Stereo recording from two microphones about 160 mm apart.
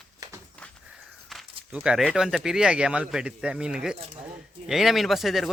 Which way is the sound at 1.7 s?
5° right (ahead or behind).